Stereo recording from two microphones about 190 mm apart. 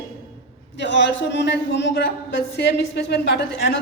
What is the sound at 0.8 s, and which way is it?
A woman's voice, 70° left (ahead or behind).